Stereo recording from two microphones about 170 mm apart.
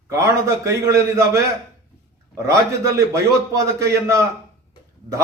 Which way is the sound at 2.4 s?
20° right (ahead or behind).